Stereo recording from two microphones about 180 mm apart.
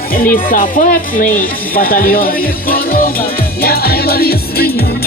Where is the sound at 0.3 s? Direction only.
50° left (ahead or behind).